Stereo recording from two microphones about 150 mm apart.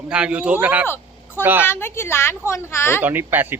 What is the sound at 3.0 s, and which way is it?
Speech, 15° right (ahead or behind).